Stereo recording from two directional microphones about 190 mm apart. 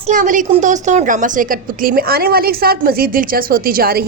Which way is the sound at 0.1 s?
45° right (ahead or behind).